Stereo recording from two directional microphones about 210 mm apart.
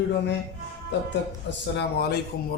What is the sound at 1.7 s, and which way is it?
Speech, 50° left (ahead or behind).